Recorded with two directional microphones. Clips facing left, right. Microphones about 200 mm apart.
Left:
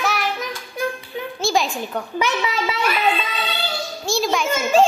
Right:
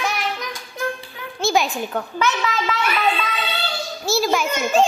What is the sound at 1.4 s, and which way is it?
Speech, centre (ahead or behind).